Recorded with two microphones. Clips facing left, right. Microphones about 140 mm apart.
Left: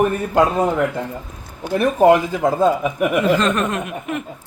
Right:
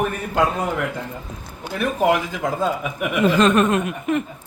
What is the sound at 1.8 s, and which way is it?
Speech, 35° left (ahead or behind).